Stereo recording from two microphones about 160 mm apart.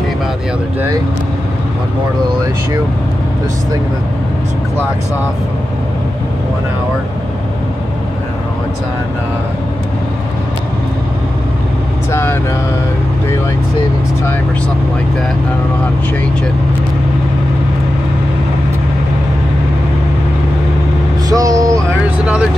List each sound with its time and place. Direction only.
12.1 s speech: 15° left (ahead or behind)
21.3 s speech: 25° right (ahead or behind)
22.0 s speech: 5° right (ahead or behind)